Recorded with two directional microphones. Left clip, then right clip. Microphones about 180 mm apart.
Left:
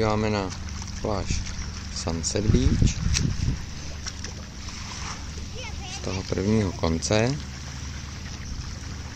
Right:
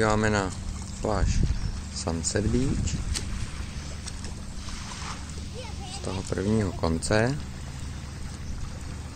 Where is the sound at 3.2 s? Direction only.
20° right (ahead or behind).